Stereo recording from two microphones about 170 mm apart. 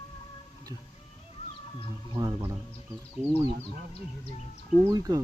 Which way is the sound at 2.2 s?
30° right (ahead or behind).